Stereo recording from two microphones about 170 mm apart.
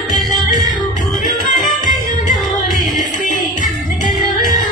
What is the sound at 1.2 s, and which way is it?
Music, 50° left (ahead or behind).